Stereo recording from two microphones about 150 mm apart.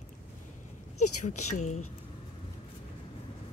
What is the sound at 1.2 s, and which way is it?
Speech, 50° left (ahead or behind).